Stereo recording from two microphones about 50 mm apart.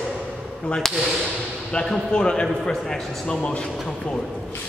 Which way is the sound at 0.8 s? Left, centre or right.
Centre.